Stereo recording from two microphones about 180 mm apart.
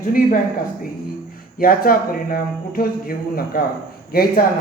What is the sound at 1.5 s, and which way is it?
Speech, 55° left (ahead or behind).